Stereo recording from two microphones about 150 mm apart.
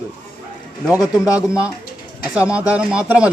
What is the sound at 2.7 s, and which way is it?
Speech, 5° right (ahead or behind).